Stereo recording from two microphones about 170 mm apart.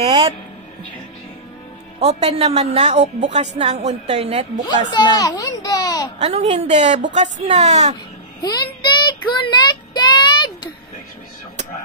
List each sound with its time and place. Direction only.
2.0 s a woman's voice: 40° right (ahead or behind)
4.9 s a child's voice: 25° left (ahead or behind)
6.1 s a woman's voice: 40° right (ahead or behind)
8.5 s child singing: 25° left (ahead or behind)